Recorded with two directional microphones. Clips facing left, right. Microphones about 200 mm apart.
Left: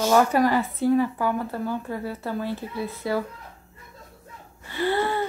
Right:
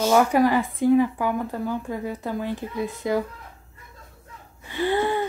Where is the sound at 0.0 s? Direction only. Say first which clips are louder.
Right 1 dB; 10° right (ahead or behind).